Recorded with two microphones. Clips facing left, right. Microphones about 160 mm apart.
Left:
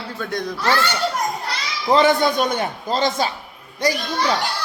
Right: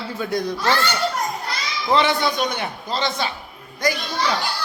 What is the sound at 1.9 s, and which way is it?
A man's voice, 45° left (ahead or behind).